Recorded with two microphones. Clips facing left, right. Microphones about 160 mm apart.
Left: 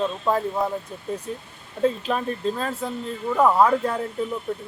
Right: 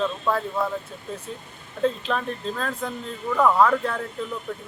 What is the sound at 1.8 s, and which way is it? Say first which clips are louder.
Speech: left 2 dB; 10° left (ahead or behind).